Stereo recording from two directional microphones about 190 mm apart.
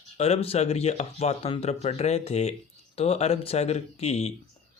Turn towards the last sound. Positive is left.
turn(degrees=35)  # may be behind; listen again after turning